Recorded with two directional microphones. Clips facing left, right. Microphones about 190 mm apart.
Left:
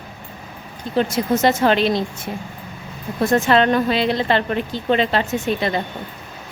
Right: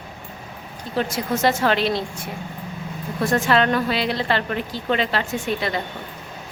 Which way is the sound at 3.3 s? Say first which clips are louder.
Left 3 dB; 25° left (ahead or behind).